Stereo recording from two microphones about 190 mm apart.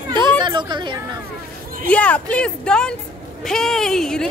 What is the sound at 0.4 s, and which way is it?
Speech, 25° right (ahead or behind).